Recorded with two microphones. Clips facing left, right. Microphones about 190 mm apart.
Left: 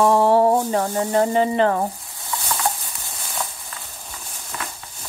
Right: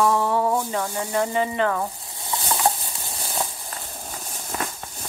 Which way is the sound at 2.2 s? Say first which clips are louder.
Right 2 dB; 20° right (ahead or behind).